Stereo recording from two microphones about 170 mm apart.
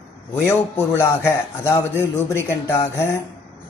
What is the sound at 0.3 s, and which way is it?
A man's voice, 15° left (ahead or behind).